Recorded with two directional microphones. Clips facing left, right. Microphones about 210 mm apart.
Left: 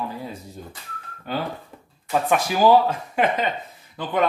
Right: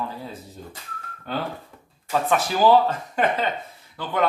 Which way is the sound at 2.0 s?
15° left (ahead or behind).